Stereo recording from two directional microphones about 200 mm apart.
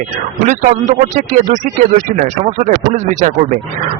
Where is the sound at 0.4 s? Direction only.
40° right (ahead or behind).